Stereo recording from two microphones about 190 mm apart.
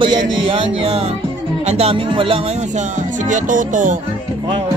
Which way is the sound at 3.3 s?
45° right (ahead or behind).